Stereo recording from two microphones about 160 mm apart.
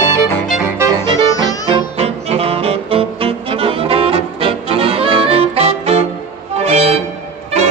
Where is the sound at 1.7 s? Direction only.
40° right (ahead or behind).